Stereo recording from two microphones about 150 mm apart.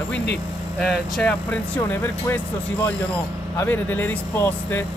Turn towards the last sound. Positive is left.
turn(degrees=15)  # may be behind; listen again after turning